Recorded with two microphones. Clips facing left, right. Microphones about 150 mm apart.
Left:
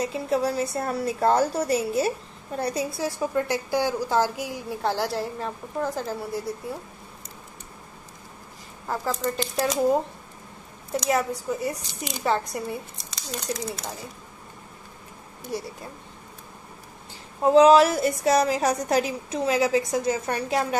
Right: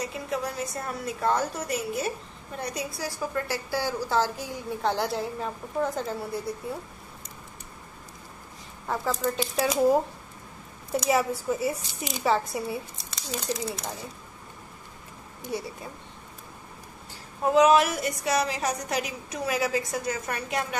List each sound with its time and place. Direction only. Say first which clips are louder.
0.0 s a woman's voice: left 6 dB; 30° left (ahead or behind); by 6.8 s centre (ahead or behind)
8.8 s a woman's voice: even; centre (ahead or behind)
17.4 s a woman's voice: left 4 dB; 30° left (ahead or behind)